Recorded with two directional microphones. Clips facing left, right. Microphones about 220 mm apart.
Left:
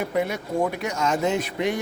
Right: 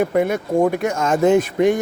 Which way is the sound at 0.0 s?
50° right (ahead or behind).